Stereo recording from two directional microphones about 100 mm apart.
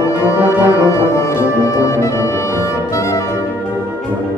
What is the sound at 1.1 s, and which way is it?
Music, 30° left (ahead or behind).